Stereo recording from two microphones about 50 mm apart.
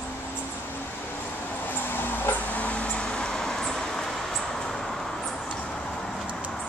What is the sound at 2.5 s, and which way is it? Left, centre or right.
Vehicle, left.